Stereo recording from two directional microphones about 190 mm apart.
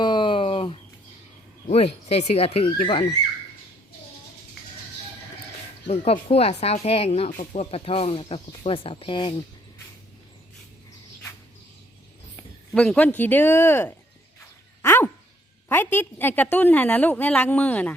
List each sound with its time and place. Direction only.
0.0 s a sound: 25° left (ahead or behind)
1.6 s speech: 35° left (ahead or behind)
5.9 s speech: 30° left (ahead or behind)
12.7 s a woman's voice: 5° left (ahead or behind)
14.8 s dog: 10° left (ahead or behind)
15.7 s a woman's voice: 10° left (ahead or behind)